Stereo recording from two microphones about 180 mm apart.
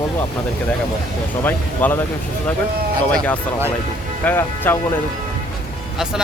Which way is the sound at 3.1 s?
10° left (ahead or behind).